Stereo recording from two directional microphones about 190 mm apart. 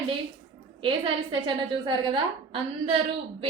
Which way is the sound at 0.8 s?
25° right (ahead or behind).